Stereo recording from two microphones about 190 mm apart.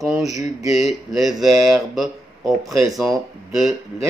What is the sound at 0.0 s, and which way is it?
Speech, centre (ahead or behind).